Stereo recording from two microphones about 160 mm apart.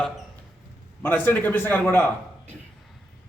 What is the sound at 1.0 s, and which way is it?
Speech, 10° left (ahead or behind).